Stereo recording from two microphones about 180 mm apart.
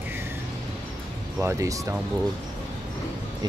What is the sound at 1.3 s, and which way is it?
Speech, 15° right (ahead or behind).